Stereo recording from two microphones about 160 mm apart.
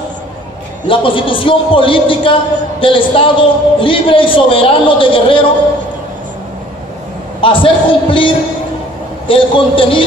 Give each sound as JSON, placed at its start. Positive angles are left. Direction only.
{"t": 0.8, "sound": "a man's voice", "side_deg": 35}
{"t": 7.4, "sound": "a man's voice", "side_deg": 30}
{"t": 9.3, "sound": "a man's voice", "side_deg": 35}